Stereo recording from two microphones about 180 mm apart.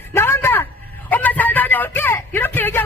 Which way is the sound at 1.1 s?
10° left (ahead or behind).